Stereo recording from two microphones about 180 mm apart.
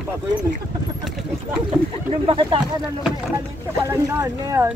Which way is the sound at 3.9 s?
15° right (ahead or behind).